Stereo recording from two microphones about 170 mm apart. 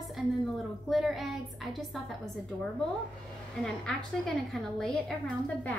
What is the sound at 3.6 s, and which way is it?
A woman's voice, 5° left (ahead or behind).